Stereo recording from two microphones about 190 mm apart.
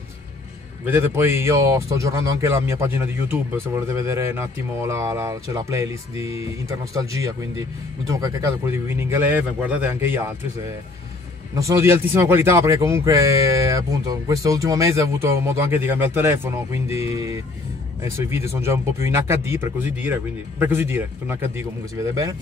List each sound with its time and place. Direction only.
0.8 s speech: 10° right (ahead or behind)
11.5 s speech: 15° right (ahead or behind)
19.0 s speech: 15° right (ahead or behind)